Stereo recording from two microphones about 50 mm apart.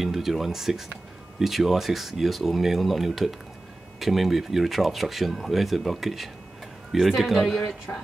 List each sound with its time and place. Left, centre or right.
0.0 s speech: centre
7.9 s speech: left